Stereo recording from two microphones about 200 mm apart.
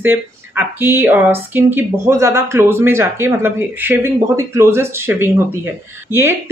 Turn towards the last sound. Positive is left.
turn(degrees=20)  # may be behind; listen again after turning